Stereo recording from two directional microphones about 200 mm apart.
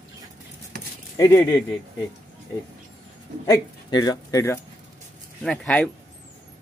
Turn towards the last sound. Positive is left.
turn(degrees=5)  # may be behind; listen again after turning